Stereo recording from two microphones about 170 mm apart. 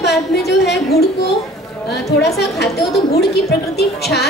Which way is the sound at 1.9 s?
75° left (ahead or behind).